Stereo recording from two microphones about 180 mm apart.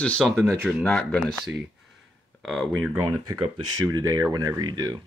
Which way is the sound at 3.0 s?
15° right (ahead or behind).